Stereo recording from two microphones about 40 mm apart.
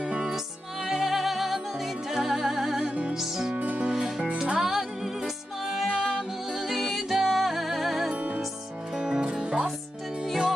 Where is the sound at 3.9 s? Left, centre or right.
Centre.